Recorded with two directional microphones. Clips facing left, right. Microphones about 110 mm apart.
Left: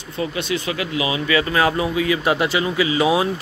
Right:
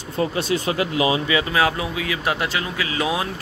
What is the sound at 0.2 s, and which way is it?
Speech, 40° right (ahead or behind).